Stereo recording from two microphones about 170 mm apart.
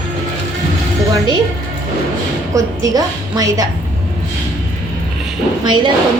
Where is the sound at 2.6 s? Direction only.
20° right (ahead or behind).